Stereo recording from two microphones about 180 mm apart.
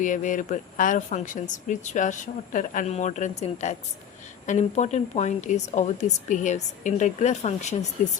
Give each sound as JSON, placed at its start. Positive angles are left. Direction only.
{"t": 0.0, "sound": "speech", "side_deg": 45}